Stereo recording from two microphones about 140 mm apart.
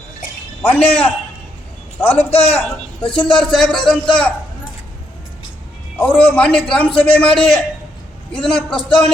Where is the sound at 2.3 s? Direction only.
45° left (ahead or behind).